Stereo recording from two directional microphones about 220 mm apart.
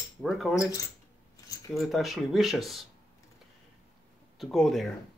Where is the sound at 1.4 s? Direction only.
15° left (ahead or behind).